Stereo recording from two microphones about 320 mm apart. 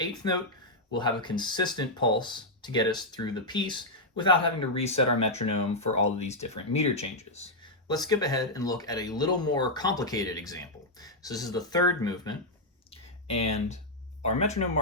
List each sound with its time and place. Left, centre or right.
0.9 s speech: centre